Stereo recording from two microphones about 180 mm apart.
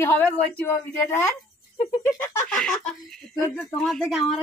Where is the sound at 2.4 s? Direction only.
5° left (ahead or behind).